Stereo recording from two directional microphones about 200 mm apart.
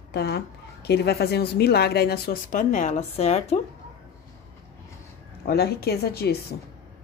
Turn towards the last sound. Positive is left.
turn(degrees=55)  # may be behind; listen again after turning